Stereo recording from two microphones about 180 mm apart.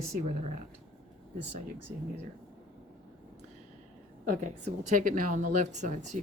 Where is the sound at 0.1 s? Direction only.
40° right (ahead or behind).